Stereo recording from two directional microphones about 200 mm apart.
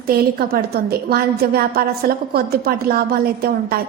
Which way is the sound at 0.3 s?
50° right (ahead or behind).